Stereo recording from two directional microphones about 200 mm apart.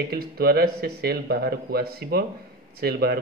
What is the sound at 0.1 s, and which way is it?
A man's voice, 50° right (ahead or behind).